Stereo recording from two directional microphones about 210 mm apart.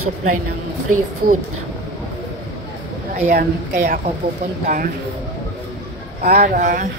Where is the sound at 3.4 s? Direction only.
50° right (ahead or behind).